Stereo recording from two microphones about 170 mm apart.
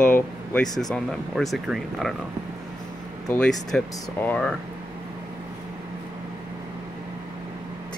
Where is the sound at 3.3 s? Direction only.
5° left (ahead or behind).